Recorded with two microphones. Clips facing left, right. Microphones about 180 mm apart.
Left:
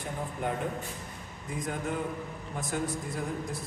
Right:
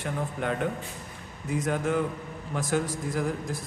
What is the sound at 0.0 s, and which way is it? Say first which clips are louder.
A man's voice: right 3 dB; 75° right (ahead or behind).